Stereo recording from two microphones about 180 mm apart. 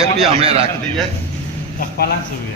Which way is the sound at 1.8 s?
60° left (ahead or behind).